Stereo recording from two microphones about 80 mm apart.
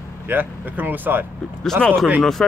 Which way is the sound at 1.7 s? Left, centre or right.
Centre.